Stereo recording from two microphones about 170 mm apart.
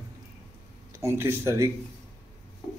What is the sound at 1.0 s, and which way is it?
Speech, 15° right (ahead or behind).